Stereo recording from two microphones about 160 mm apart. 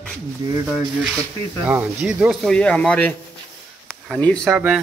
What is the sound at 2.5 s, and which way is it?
Speech, 5° left (ahead or behind).